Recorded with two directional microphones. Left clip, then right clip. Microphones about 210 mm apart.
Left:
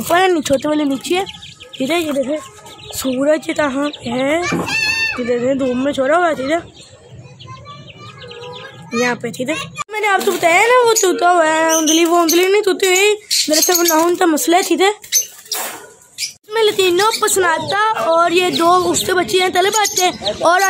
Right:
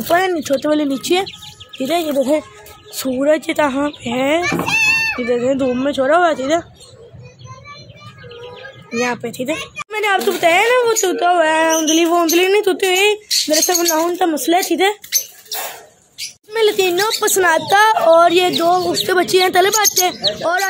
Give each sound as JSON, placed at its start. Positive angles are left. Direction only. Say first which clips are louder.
{"t": 0.3, "sound": "a woman's voice", "louder": "left 1 dB", "side_deg": 10}
{"t": 1.8, "sound": "a woman's voice", "louder": "even", "side_deg": 10}
{"t": 9.1, "sound": "a woman's voice", "louder": "left 1 dB", "side_deg": 0}
{"t": 9.5, "sound": "a woman's voice", "louder": "left 1 dB", "side_deg": 40}
{"t": 9.8, "sound": "a woman's voice", "louder": "left 1 dB", "side_deg": 0}
{"t": 16.5, "sound": "a woman's voice", "louder": "left 1 dB", "side_deg": 0}
{"t": 18.6, "sound": "speech", "louder": "left 2 dB", "side_deg": 10}
{"t": 19.1, "sound": "speech", "louder": "right 3 dB", "side_deg": -10}
{"t": 19.7, "sound": "a woman's voice", "louder": "even", "side_deg": 0}